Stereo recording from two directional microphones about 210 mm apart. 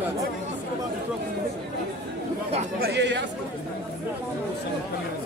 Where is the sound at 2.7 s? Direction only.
50° right (ahead or behind).